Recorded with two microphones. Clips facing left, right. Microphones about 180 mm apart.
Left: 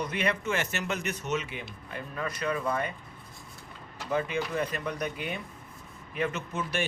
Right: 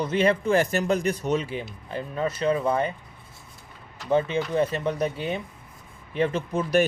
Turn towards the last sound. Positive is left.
turn(degrees=-35)  # may be behind; listen again after turning